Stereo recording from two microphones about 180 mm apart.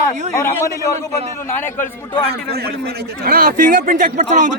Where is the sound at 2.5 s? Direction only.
60° right (ahead or behind).